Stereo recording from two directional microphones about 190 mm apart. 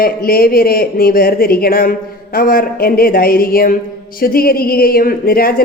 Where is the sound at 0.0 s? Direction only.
50° left (ahead or behind).